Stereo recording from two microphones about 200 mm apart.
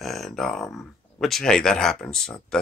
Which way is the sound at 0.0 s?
Centre (ahead or behind).